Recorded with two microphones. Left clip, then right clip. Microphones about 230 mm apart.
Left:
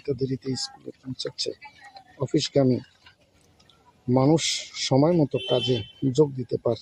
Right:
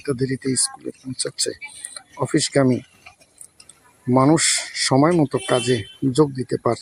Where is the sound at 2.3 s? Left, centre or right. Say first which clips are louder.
Right 3 dB; centre.